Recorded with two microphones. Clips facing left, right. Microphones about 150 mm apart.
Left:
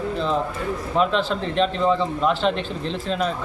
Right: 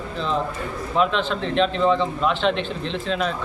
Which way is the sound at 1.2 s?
40° left (ahead or behind).